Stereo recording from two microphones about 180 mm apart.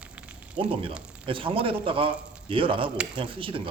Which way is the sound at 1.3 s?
30° right (ahead or behind).